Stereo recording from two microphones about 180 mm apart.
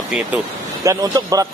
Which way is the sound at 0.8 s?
20° right (ahead or behind).